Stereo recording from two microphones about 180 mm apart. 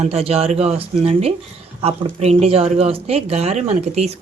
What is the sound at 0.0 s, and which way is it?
A woman's voice, 35° right (ahead or behind).